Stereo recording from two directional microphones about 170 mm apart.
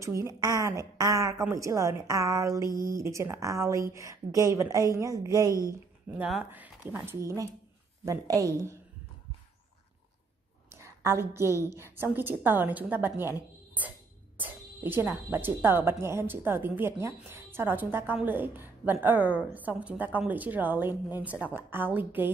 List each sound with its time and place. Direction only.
0.0 s a woman's voice: 20° right (ahead or behind)
10.7 s a woman's voice: 15° right (ahead or behind)